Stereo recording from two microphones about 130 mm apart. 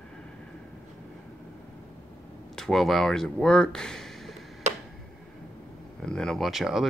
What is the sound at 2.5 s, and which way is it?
Speech, 5° left (ahead or behind).